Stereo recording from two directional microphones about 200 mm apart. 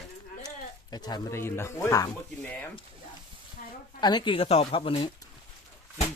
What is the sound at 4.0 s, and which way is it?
Speech, 20° left (ahead or behind).